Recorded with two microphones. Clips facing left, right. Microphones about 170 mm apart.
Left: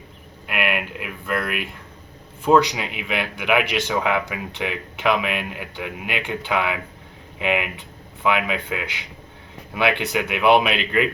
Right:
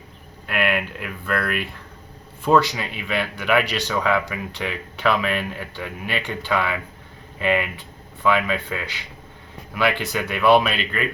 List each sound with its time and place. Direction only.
0.4 s speech: 15° left (ahead or behind)
10.1 s speech: 15° left (ahead or behind)